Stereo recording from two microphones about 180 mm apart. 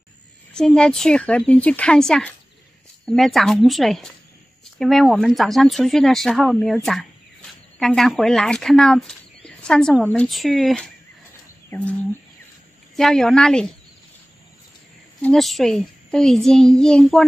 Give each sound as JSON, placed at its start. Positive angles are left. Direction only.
{"t": 0.6, "sound": "speech", "side_deg": 5}
{"t": 12.9, "sound": "speech", "side_deg": 5}
{"t": 15.2, "sound": "speech", "side_deg": 0}